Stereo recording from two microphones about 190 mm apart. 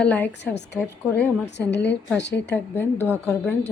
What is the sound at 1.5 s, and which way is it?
Speech, 65° left (ahead or behind).